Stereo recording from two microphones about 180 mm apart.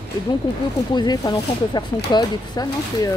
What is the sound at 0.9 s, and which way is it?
Speech, 20° left (ahead or behind).